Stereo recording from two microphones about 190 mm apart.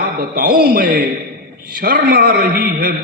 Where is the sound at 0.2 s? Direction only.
50° right (ahead or behind).